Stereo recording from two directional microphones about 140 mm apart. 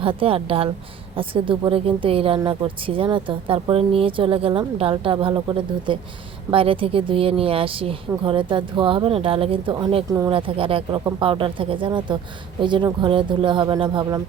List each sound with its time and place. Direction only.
0.0 s speech: 40° right (ahead or behind)
10.1 s speech: 25° right (ahead or behind)
10.3 s speech: 40° right (ahead or behind)